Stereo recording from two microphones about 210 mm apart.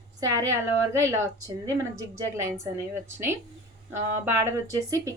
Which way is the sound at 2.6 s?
10° right (ahead or behind).